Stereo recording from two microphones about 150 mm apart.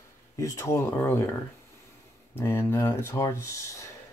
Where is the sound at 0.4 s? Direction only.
20° left (ahead or behind).